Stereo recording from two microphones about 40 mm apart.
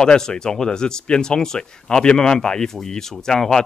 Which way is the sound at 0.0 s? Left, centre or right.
Centre.